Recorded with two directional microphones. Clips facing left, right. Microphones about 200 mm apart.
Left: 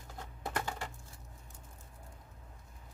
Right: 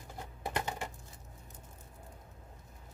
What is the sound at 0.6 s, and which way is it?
Coin, 20° right (ahead or behind).